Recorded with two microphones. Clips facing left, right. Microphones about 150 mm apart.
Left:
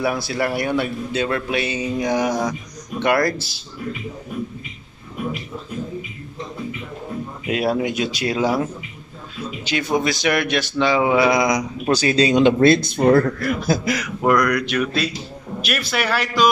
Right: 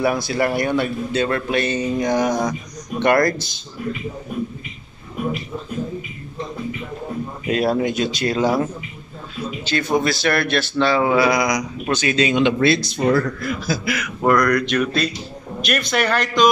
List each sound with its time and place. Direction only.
0.0 s a man's voice: centre (ahead or behind)
7.4 s speech: 10° left (ahead or behind)
9.9 s a man's voice: 15° left (ahead or behind); by 13.7 s 60° left (ahead or behind)
13.8 s a man's voice: 35° left (ahead or behind)
14.2 s speech: 10° left (ahead or behind)